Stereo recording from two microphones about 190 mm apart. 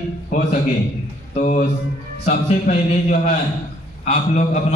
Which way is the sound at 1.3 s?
40° left (ahead or behind).